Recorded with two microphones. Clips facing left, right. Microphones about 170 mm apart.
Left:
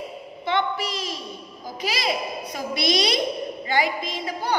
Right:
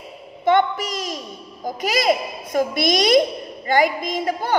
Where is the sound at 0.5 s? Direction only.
45° right (ahead or behind).